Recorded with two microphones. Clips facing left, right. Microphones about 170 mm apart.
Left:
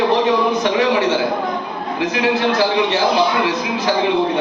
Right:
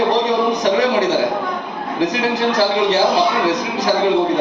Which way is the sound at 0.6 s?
40° right (ahead or behind).